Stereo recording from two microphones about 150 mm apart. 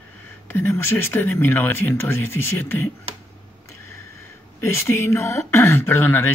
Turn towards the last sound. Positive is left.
turn(degrees=15)  # may be behind; listen again after turning